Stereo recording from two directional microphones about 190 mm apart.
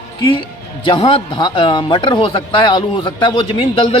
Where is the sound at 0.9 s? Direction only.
25° left (ahead or behind).